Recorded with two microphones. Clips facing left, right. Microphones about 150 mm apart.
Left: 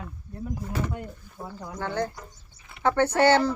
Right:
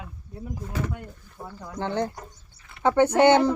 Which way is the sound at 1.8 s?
20° right (ahead or behind).